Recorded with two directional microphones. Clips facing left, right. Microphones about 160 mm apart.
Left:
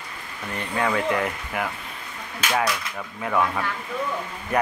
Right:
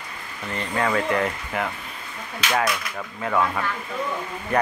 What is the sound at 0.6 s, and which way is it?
Speech, 10° left (ahead or behind).